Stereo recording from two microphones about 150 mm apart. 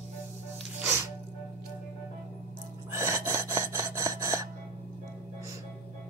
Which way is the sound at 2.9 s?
15° right (ahead or behind).